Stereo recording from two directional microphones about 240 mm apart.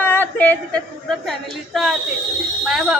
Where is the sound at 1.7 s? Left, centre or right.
Centre.